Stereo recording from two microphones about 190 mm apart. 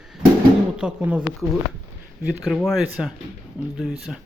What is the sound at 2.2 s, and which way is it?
Speech, centre (ahead or behind).